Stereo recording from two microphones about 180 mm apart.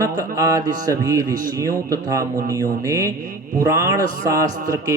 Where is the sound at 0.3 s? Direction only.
20° right (ahead or behind).